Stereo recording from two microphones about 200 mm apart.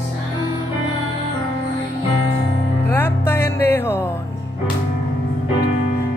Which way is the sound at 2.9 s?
10° left (ahead or behind).